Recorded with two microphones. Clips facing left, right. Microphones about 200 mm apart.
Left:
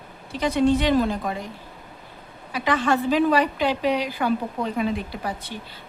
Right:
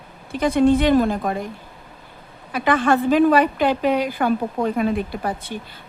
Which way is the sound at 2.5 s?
55° right (ahead or behind).